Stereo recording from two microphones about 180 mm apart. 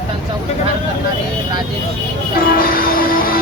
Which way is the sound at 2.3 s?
50° left (ahead or behind).